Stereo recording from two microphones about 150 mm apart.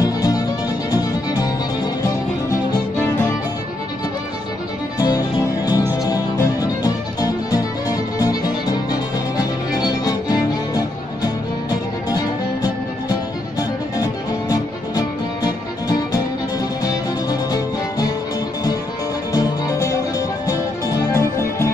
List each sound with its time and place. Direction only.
0.0 s music: 25° left (ahead or behind)
4.9 s music: 25° left (ahead or behind)
13.6 s music: 25° left (ahead or behind)
19.3 s music: 20° left (ahead or behind)